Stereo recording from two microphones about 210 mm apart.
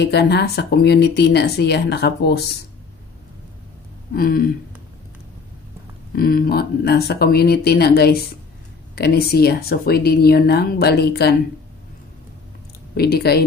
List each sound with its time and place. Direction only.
0.0 s speech: 50° left (ahead or behind)
4.1 s speech: 45° left (ahead or behind)
6.1 s speech: 45° left (ahead or behind)
12.9 s speech: 50° left (ahead or behind)